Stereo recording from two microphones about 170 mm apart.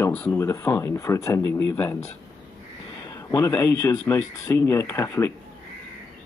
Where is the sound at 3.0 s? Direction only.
20° left (ahead or behind).